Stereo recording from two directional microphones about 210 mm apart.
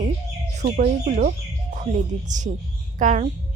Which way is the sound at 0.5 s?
35° right (ahead or behind).